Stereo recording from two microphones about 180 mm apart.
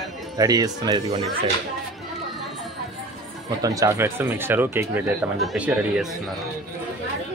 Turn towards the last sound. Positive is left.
turn(degrees=-5)  # may be behind; listen again after turning